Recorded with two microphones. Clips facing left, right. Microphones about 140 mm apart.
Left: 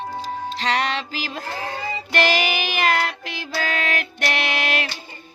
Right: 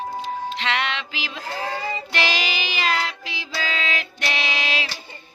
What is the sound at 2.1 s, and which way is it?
Child singing, 50° left (ahead or behind).